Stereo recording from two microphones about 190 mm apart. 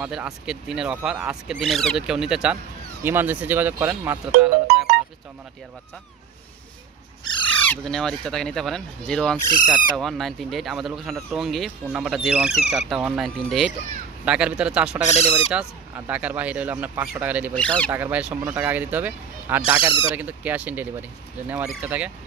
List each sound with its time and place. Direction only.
0.0 s speech: 5° right (ahead or behind)
1.6 s speech: centre (ahead or behind)
7.4 s speech: 5° left (ahead or behind)
9.5 s bird: 45° left (ahead or behind)
9.9 s speech: centre (ahead or behind)
15.0 s speech: 35° left (ahead or behind)
16.1 s speech: 5° right (ahead or behind)
17.6 s speech: 5° left (ahead or behind)
17.9 s speech: 10° right (ahead or behind)
19.6 s speech: 30° left (ahead or behind)
20.2 s speech: 10° right (ahead or behind)